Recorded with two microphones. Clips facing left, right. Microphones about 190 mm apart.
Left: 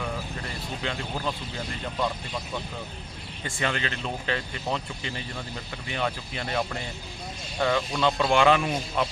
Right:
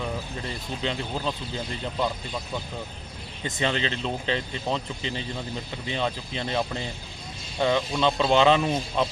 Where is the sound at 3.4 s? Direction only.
20° right (ahead or behind).